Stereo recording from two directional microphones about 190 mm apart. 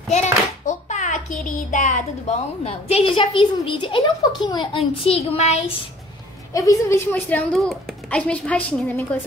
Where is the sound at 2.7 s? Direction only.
30° left (ahead or behind).